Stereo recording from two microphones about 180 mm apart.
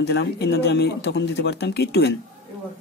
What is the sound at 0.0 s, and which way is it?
Speech, 70° left (ahead or behind).